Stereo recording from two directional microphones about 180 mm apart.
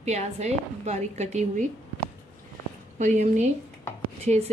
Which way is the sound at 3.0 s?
40° right (ahead or behind).